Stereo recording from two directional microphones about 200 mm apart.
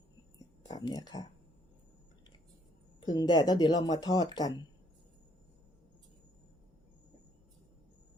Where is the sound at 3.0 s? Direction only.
20° left (ahead or behind).